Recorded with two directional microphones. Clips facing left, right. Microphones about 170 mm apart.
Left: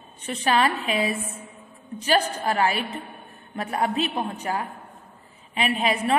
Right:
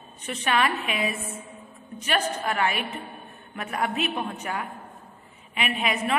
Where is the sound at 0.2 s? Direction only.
30° left (ahead or behind).